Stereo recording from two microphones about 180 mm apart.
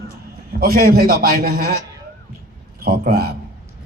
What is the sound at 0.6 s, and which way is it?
Speech, 55° right (ahead or behind).